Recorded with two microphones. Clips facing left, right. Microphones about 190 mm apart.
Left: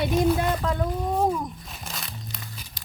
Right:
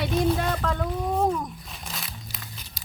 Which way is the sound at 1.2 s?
10° left (ahead or behind).